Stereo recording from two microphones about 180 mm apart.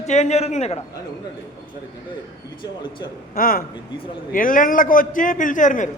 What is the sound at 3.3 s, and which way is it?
A man's voice, 55° left (ahead or behind).